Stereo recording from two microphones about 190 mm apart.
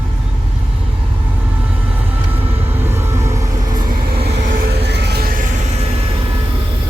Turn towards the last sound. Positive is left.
turn(degrees=-55)  # may be behind; listen again after turning